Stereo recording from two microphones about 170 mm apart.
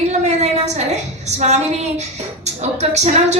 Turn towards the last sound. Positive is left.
turn(degrees=-40)  # may be behind; listen again after turning